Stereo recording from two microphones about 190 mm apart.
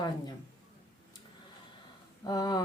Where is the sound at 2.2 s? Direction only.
20° left (ahead or behind).